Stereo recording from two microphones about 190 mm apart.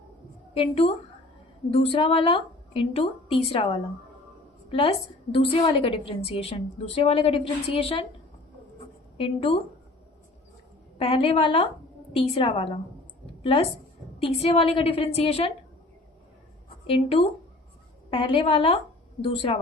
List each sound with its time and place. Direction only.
0.5 s a woman's voice: 30° left (ahead or behind)
9.1 s a woman's voice: 30° left (ahead or behind)
10.9 s a woman's voice: 30° left (ahead or behind)
16.8 s a woman's voice: 30° left (ahead or behind)